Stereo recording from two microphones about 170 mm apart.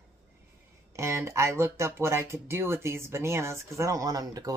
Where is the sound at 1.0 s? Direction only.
15° right (ahead or behind).